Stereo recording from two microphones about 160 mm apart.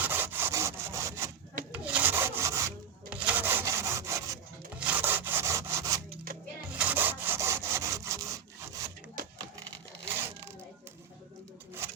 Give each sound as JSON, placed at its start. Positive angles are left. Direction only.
{"t": 0.0, "sound": "sawing", "side_deg": -15}
{"t": 1.7, "sound": "rub", "side_deg": -10}
{"t": 3.1, "sound": "wood", "side_deg": -10}
{"t": 4.8, "sound": "sawing", "side_deg": -10}
{"t": 10.2, "sound": "a sound", "side_deg": -15}